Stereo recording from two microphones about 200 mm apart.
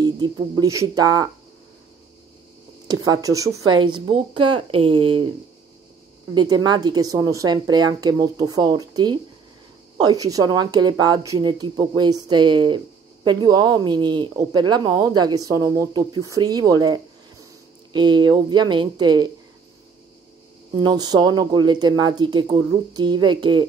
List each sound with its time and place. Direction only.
0.0 s speech: 20° right (ahead or behind)
2.9 s speech: 20° right (ahead or behind)
6.3 s speech: 20° right (ahead or behind)
20.7 s speech: 20° right (ahead or behind)